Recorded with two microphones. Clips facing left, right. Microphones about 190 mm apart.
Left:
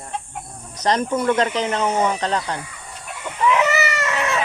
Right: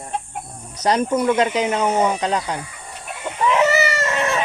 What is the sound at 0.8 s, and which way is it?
Speech, 10° right (ahead or behind).